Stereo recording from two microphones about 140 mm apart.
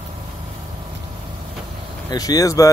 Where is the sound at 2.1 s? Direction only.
25° left (ahead or behind).